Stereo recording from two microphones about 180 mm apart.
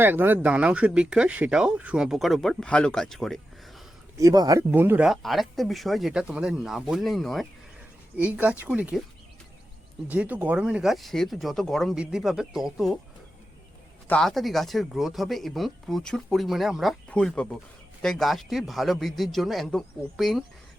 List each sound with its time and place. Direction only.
0.0 s speech: 10° right (ahead or behind)
4.2 s speech: 20° right (ahead or behind)
10.1 s speech: 10° right (ahead or behind)
14.1 s speech: centre (ahead or behind)